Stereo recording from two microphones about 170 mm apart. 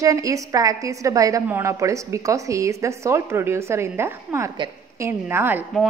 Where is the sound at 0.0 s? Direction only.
20° right (ahead or behind).